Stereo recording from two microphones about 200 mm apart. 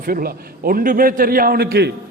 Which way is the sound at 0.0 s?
45° right (ahead or behind).